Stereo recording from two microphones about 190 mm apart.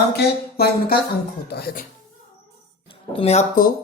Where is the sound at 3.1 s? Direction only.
35° left (ahead or behind).